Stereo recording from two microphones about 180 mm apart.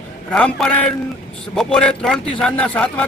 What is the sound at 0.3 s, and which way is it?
Speech, 5° left (ahead or behind).